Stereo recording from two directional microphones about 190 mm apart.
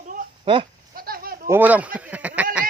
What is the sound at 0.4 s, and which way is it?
Speech, 30° right (ahead or behind).